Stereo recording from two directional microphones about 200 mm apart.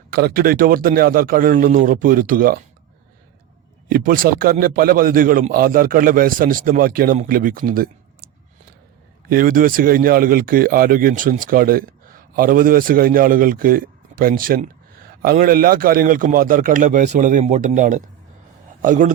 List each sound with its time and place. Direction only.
0.1 s speech: 50° right (ahead or behind)
3.8 s speech: 45° right (ahead or behind)
9.3 s speech: 45° right (ahead or behind)